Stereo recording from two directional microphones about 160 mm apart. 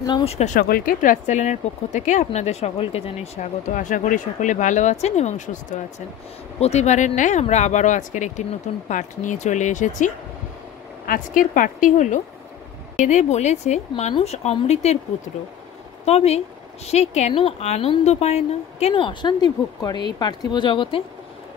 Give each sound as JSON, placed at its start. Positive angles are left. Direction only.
{"t": 0.0, "sound": "speech", "side_deg": 25}
{"t": 0.3, "sound": "speech", "side_deg": 45}
{"t": 0.6, "sound": "a woman's voice", "side_deg": 70}
{"t": 16.1, "sound": "a woman's voice", "side_deg": 40}